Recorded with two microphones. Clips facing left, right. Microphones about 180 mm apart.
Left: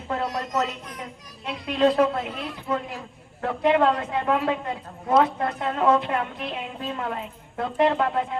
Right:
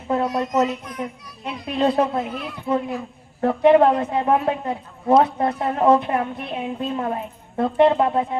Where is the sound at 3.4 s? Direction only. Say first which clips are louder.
Right 6 dB; 30° right (ahead or behind).